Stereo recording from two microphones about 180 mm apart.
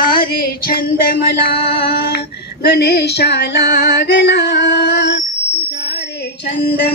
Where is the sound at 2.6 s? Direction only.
65° left (ahead or behind).